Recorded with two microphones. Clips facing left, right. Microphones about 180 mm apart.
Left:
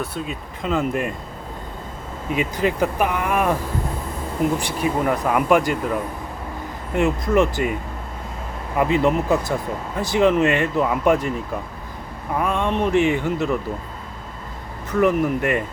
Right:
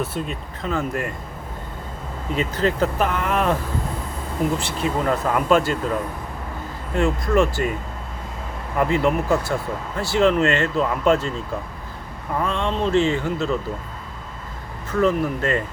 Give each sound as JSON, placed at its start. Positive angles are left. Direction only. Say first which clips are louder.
{"t": 0.0, "sound": "speech", "louder": "right 1 dB", "side_deg": 0}
{"t": 0.6, "sound": "speech", "louder": "left 3 dB", "side_deg": 15}
{"t": 2.3, "sound": "speech", "louder": "even", "side_deg": 15}
{"t": 4.5, "sound": "speech", "louder": "left 1 dB", "side_deg": 15}
{"t": 8.8, "sound": "speech", "louder": "left 1 dB", "side_deg": 20}
{"t": 15.0, "sound": "speech", "louder": "left 2 dB", "side_deg": 15}